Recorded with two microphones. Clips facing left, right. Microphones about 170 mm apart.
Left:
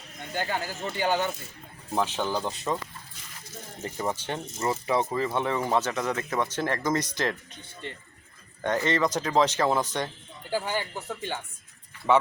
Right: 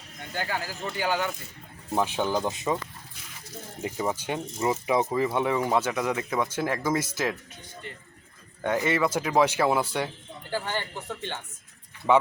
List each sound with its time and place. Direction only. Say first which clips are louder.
0.3 s speech: left 1 dB; 20° left (ahead or behind)
1.9 s speech: right 2 dB; 10° right (ahead or behind)
3.8 s speech: right 2 dB; 10° right (ahead or behind)
7.8 s speech: left 4 dB; 30° left (ahead or behind)
8.6 s speech: even; 10° right (ahead or behind)
10.5 s speech: left 2 dB; 10° left (ahead or behind)